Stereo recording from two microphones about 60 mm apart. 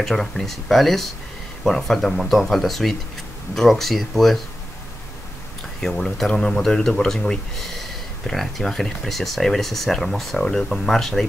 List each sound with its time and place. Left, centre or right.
0.0 s speech: centre
5.8 s speech: centre